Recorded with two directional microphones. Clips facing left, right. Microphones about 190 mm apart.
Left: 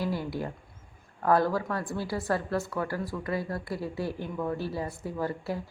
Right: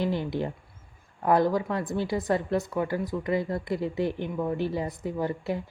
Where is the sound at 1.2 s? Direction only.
20° right (ahead or behind).